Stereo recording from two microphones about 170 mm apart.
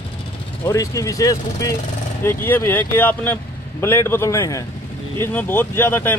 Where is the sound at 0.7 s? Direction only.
20° left (ahead or behind).